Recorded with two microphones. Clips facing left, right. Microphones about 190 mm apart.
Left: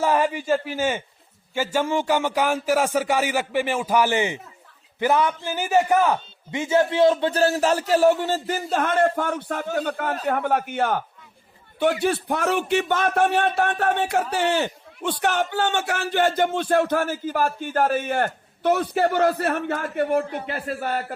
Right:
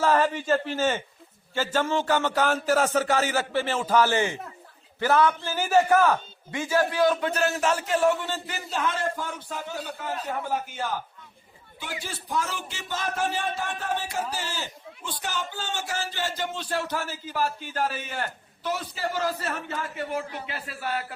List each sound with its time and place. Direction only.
0.0 s a man's voice: 15° left (ahead or behind); by 21.2 s 50° left (ahead or behind)